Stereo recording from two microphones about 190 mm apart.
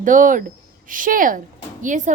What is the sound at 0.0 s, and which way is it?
A woman's voice, 45° right (ahead or behind).